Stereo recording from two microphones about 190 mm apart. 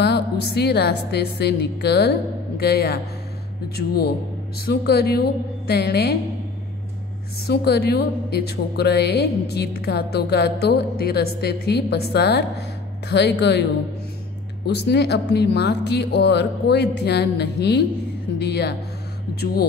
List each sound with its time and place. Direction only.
0.0 s a woman's voice: 60° left (ahead or behind)
7.4 s a woman's voice: 60° left (ahead or behind)
14.9 s a woman's voice: 60° left (ahead or behind)